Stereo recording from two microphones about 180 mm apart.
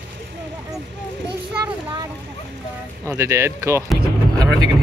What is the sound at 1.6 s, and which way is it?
Speech, 25° right (ahead or behind).